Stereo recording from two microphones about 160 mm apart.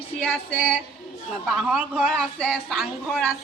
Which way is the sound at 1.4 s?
5° right (ahead or behind).